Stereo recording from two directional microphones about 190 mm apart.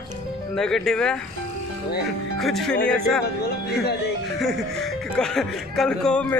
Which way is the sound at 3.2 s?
55° left (ahead or behind).